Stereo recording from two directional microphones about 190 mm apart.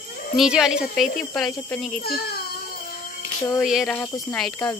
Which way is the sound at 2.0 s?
55° left (ahead or behind).